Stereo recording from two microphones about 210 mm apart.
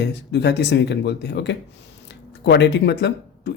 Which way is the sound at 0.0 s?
55° left (ahead or behind).